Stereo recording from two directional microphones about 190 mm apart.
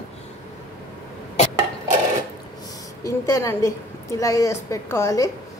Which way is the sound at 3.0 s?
15° left (ahead or behind).